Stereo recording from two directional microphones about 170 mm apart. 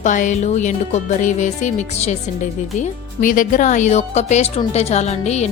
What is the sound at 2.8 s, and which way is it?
Speech, 50° left (ahead or behind).